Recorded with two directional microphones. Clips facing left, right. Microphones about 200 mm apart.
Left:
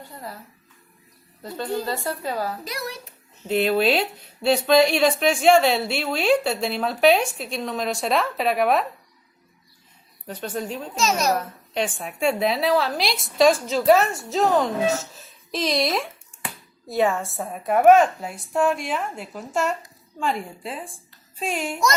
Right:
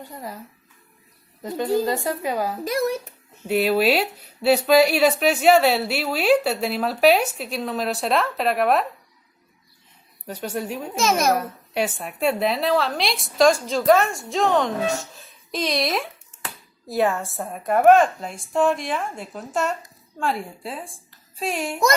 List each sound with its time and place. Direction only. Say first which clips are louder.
0.0 s speech: right 2 dB; 15° right (ahead or behind)
1.4 s a woman's voice: right 6 dB; 15° right (ahead or behind)
2.6 s a child's voice: right 10 dB; 50° right (ahead or behind)
3.4 s a woman's voice: right 1 dB; 10° right (ahead or behind)
10.2 s a woman's voice: right 1 dB; 10° right (ahead or behind)